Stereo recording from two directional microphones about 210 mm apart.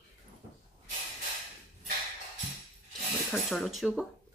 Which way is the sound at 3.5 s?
Centre (ahead or behind).